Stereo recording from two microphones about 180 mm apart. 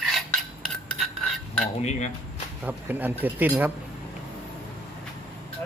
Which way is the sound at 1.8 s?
40° left (ahead or behind).